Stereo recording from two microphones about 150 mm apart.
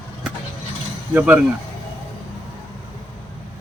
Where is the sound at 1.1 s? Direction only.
10° right (ahead or behind).